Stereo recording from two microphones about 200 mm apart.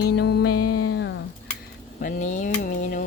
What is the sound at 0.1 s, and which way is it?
Music, 55° left (ahead or behind).